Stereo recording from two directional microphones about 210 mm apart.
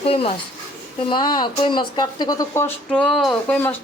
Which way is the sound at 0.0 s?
25° left (ahead or behind).